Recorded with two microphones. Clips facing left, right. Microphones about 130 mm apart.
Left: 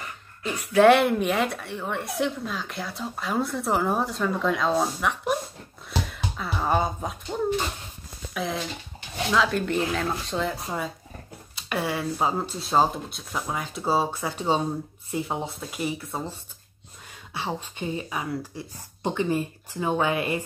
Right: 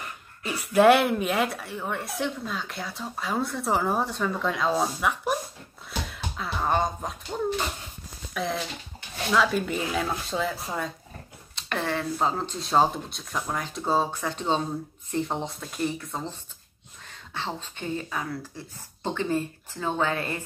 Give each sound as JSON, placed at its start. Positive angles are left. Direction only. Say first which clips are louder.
{"t": 0.4, "sound": "a woman's voice", "louder": "left 1 dB", "side_deg": -5}
{"t": 5.9, "sound": "music", "louder": "left 4 dB", "side_deg": 0}
{"t": 8.3, "sound": "a woman's voice", "louder": "even", "side_deg": 0}